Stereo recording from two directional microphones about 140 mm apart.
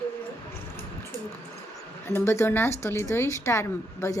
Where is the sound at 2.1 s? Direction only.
20° left (ahead or behind).